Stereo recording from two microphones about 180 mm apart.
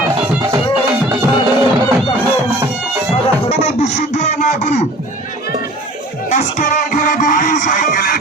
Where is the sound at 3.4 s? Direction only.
40° left (ahead or behind).